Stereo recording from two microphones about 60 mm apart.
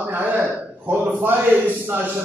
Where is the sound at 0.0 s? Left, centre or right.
Right.